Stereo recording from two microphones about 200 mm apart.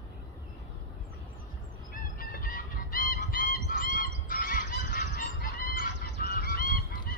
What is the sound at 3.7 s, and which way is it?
Goose, 45° left (ahead or behind).